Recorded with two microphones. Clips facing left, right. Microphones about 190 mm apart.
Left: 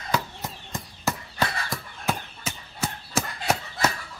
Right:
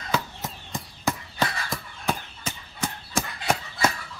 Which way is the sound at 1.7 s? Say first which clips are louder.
Even; 5° left (ahead or behind).